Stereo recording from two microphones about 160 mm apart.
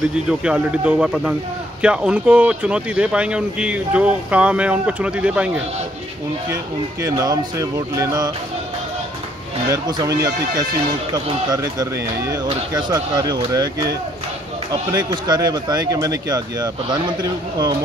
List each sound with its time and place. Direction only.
0.3 s speech: 5° right (ahead or behind)
6.5 s speech: 20° right (ahead or behind)
9.7 s speech: 25° right (ahead or behind)
14.7 s speech: 25° right (ahead or behind)